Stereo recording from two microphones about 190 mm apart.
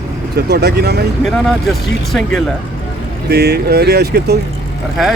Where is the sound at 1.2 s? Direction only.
Centre (ahead or behind).